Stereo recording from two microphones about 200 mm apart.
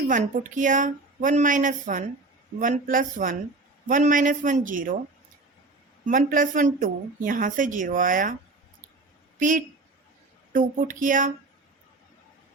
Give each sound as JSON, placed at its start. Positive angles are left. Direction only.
{"t": 0.1, "sound": "speech", "side_deg": -40}
{"t": 6.1, "sound": "a woman's voice", "side_deg": -40}
{"t": 9.4, "sound": "speech", "side_deg": -40}